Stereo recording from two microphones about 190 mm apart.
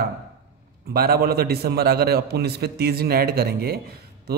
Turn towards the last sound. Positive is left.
turn(degrees=-55)  # may be behind; listen again after turning